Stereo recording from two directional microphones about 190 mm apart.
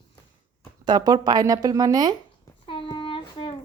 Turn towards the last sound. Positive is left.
turn(degrees=25)  # may be behind; listen again after turning